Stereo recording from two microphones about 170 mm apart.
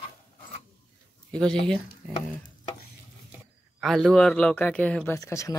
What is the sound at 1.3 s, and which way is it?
Speech, 5° left (ahead or behind).